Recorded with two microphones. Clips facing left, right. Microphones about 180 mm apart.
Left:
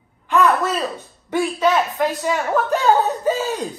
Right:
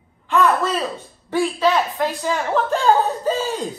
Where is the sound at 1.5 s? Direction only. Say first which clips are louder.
Left 3 dB; 20° left (ahead or behind).